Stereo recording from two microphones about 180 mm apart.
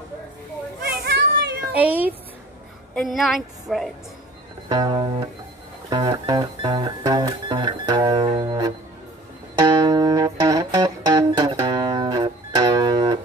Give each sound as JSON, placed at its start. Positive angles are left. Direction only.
{"t": 1.0, "sound": "a sound", "side_deg": -65}
{"t": 1.7, "sound": "a woman's voice", "side_deg": -10}
{"t": 4.6, "sound": "music", "side_deg": -25}